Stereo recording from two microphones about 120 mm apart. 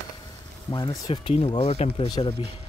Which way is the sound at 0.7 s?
35° left (ahead or behind).